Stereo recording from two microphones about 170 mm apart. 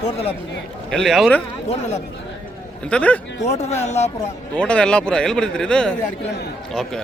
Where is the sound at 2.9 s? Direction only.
10° left (ahead or behind).